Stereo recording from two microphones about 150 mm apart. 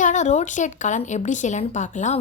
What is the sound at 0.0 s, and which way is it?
Speech, 55° left (ahead or behind).